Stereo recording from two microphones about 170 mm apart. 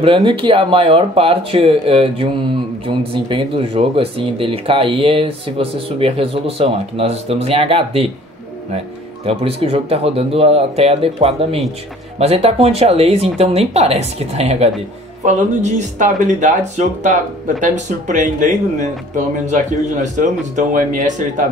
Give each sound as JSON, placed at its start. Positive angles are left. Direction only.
{"t": 0.0, "sound": "speech", "side_deg": -30}
{"t": 9.2, "sound": "speech", "side_deg": -35}